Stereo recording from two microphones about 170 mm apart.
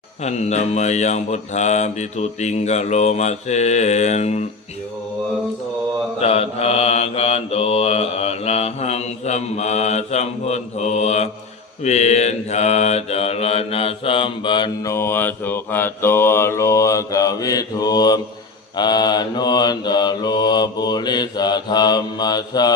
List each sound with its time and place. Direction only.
0.2 s mantra: 40° left (ahead or behind)
6.1 s mantra: 35° left (ahead or behind)